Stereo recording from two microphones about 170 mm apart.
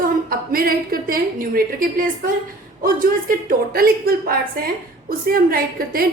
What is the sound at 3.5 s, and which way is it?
A woman's voice, 60° right (ahead or behind).